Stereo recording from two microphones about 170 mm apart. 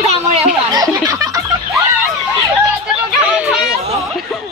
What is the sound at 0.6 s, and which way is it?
Snicker, 20° right (ahead or behind).